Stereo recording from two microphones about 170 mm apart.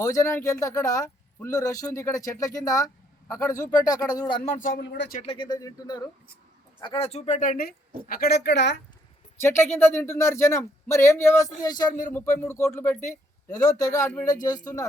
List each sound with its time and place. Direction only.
0.0 s speech: 20° left (ahead or behind)
4.4 s speech: 50° left (ahead or behind)
4.8 s speech: 85° left
5.2 s speech: 30° left (ahead or behind)
6.8 s speech: 35° left (ahead or behind); by 8.7 s 85° left
9.4 s speech: 15° left (ahead or behind)